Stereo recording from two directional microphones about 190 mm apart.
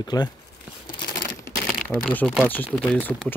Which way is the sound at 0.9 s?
20° left (ahead or behind).